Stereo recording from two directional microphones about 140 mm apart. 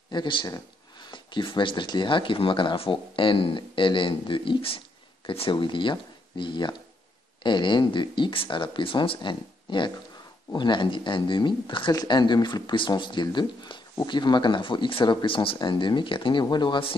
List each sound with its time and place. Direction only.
0.1 s speech: 35° left (ahead or behind)